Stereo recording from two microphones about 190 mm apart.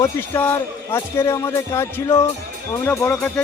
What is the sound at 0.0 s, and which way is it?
A man's voice, 10° left (ahead or behind).